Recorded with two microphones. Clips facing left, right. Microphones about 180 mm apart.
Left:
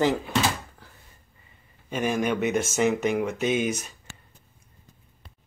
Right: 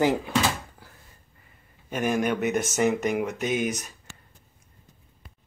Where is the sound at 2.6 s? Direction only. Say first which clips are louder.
Left 1 dB; 20° right (ahead or behind).